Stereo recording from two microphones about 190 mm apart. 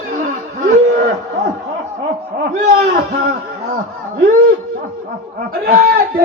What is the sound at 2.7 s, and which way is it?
Speech, 55° right (ahead or behind).